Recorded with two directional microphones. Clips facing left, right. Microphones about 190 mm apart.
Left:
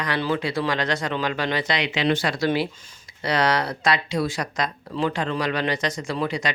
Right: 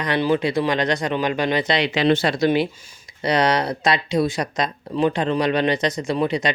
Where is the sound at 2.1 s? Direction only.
25° right (ahead or behind).